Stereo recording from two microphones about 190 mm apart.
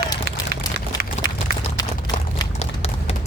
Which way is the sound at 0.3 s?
55° right (ahead or behind).